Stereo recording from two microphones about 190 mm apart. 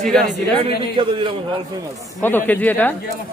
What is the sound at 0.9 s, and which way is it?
Speech, 25° right (ahead or behind).